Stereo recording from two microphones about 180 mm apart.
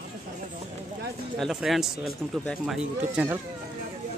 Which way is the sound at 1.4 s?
Centre (ahead or behind).